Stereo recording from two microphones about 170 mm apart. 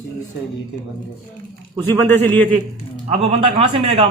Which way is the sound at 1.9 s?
10° left (ahead or behind).